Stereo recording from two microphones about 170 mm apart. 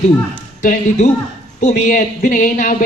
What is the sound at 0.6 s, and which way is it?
A man's voice, 45° left (ahead or behind).